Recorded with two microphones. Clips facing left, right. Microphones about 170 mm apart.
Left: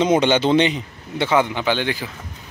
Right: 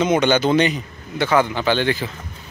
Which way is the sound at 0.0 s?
30° left (ahead or behind).